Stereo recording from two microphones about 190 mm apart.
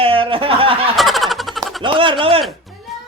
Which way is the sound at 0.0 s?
30° right (ahead or behind).